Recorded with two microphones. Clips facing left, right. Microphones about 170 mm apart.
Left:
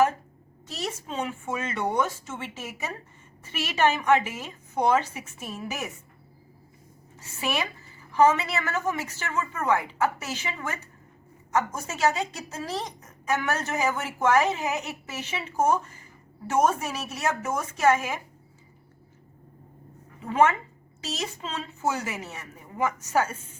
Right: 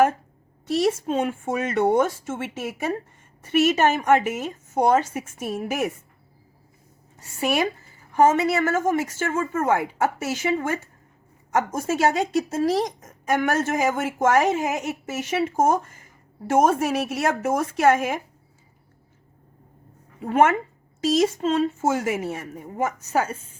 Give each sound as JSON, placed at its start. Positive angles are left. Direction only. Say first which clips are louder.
{"t": 0.9, "sound": "a woman's voice", "louder": "right 5 dB", "side_deg": -55}
{"t": 7.3, "sound": "a woman's voice", "louder": "right 7 dB", "side_deg": -45}
{"t": 20.2, "sound": "a woman's voice", "louder": "right 3 dB", "side_deg": -55}